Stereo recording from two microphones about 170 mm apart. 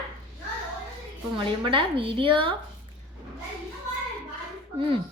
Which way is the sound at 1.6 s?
30° right (ahead or behind).